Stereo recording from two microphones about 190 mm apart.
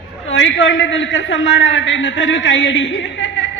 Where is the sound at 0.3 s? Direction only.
80° left.